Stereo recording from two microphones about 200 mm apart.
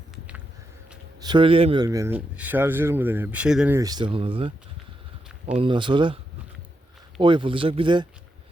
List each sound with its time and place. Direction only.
1.2 s speech: 25° right (ahead or behind); by 3.8 s 5° right (ahead or behind)
3.8 s speech: 20° right (ahead or behind)
5.5 s speech: 25° right (ahead or behind)
7.2 s speech: 25° right (ahead or behind)